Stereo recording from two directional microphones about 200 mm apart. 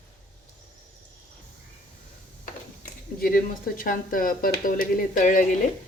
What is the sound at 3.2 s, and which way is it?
Speech, 45° left (ahead or behind).